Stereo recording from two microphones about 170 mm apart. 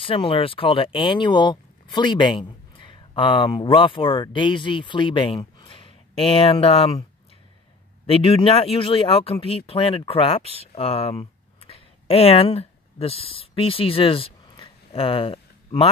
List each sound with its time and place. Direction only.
0.0 s speech: 35° left (ahead or behind)
8.1 s speech: 35° left (ahead or behind)